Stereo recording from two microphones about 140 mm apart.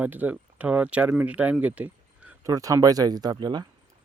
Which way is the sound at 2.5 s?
20° right (ahead or behind).